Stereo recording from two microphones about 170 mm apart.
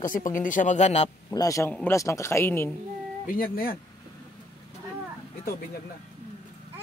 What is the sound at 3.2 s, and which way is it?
Speech, 60° left (ahead or behind).